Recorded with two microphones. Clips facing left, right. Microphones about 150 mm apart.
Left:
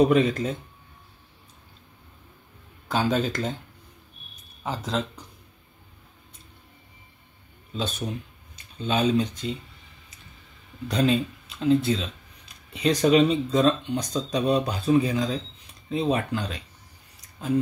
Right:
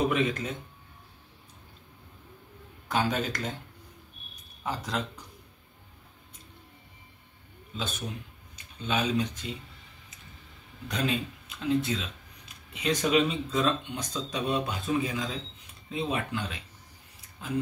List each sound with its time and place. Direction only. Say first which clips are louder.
0.0 s speech: left 7 dB; 35° left (ahead or behind)
2.9 s speech: left 4 dB; 30° left (ahead or behind)
4.6 s speech: left 4 dB; 25° left (ahead or behind)
8.8 s speech: left 5 dB; 30° left (ahead or behind)
10.9 s speech: left 7 dB; 30° left (ahead or behind)
17.2 s a sound: left 9 dB; 40° left (ahead or behind)